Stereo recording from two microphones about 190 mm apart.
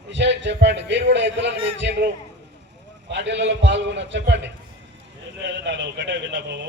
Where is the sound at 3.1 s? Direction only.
70° right (ahead or behind).